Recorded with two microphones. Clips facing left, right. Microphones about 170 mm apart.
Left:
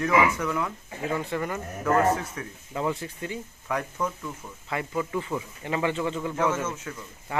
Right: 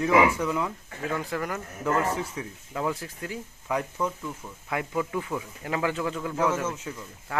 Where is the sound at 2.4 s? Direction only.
15° right (ahead or behind).